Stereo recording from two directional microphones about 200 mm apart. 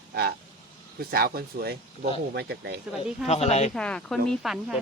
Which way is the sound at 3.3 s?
30° left (ahead or behind).